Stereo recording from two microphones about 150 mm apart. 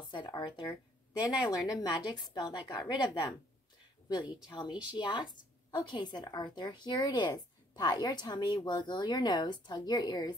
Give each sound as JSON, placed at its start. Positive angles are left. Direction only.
{"t": 0.1, "sound": "a sound", "side_deg": 30}
{"t": 1.2, "sound": "a woman's voice", "side_deg": 20}
{"t": 4.5, "sound": "a woman's voice", "side_deg": 30}